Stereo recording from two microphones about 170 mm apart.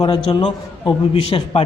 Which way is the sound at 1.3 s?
35° left (ahead or behind).